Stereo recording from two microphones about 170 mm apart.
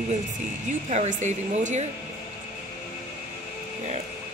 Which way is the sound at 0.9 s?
45° right (ahead or behind).